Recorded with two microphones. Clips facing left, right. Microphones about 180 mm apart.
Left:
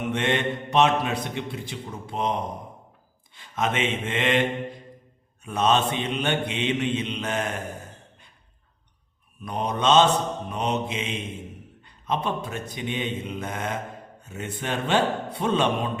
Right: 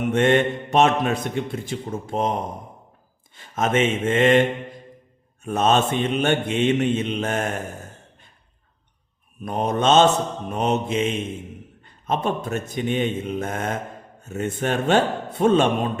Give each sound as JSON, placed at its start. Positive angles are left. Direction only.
{"t": 0.1, "sound": "a man's voice", "side_deg": -45}
{"t": 5.4, "sound": "mantra", "side_deg": -45}
{"t": 9.4, "sound": "a man's voice", "side_deg": -45}